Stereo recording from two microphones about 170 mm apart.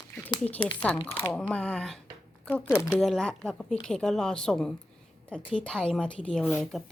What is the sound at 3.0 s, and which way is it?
A woman's voice, 5° left (ahead or behind).